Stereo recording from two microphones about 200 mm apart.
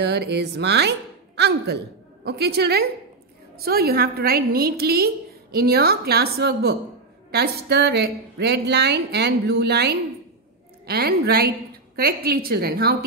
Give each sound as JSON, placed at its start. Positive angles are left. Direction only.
{"t": 0.0, "sound": "a woman's voice", "side_deg": -60}